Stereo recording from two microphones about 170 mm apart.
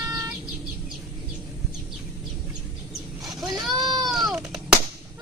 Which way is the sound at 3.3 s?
25° right (ahead or behind).